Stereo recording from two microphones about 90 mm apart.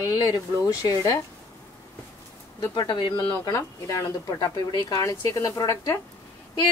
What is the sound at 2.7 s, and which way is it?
Speech, 55° left (ahead or behind).